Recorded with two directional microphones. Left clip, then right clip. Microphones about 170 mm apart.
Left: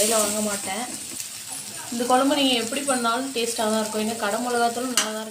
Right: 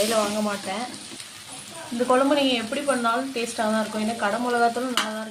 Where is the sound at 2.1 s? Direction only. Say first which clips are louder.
Even; 10° right (ahead or behind).